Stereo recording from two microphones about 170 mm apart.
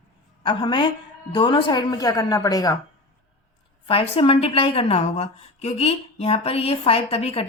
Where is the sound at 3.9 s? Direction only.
35° left (ahead or behind).